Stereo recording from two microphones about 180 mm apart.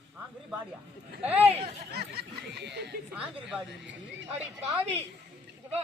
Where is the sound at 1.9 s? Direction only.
65° right (ahead or behind).